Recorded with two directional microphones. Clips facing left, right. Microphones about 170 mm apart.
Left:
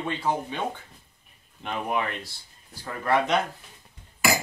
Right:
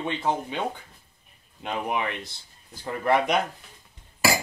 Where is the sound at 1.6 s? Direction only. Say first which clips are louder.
Even; 15° right (ahead or behind).